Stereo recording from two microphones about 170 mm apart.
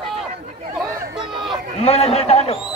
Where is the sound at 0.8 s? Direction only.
Centre (ahead or behind).